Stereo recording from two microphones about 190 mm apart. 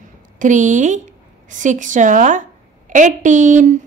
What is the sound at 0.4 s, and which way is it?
A woman's voice, 40° right (ahead or behind).